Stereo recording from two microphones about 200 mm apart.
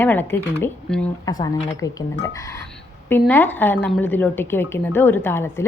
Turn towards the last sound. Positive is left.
turn(degrees=10)  # may be behind; listen again after turning